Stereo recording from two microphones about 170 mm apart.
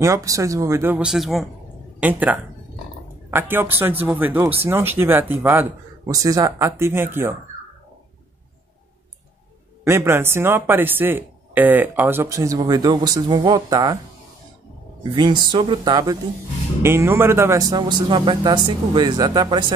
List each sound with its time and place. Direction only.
0.0 s speech: 20° right (ahead or behind)
0.9 s speech: 5° right (ahead or behind)
9.8 s speech: 15° right (ahead or behind)
15.0 s a man's voice: 25° right (ahead or behind)